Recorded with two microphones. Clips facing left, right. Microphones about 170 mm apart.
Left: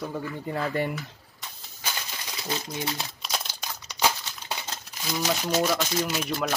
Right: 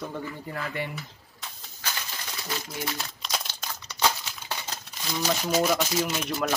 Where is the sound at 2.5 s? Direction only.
20° left (ahead or behind).